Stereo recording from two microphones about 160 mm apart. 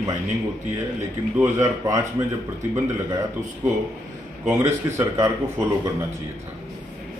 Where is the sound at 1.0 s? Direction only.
20° right (ahead or behind).